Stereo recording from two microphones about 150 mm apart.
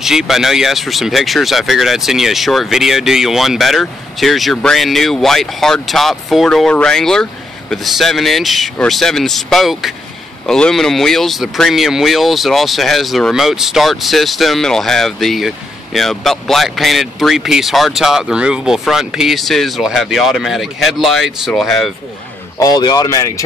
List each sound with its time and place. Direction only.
0.0 s speech: 5° right (ahead or behind)
22.6 s speech: 25° left (ahead or behind)